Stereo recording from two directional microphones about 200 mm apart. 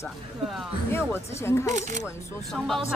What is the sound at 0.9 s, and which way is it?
Speech, 10° left (ahead or behind).